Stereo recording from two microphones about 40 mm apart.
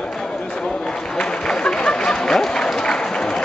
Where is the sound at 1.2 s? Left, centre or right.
Left.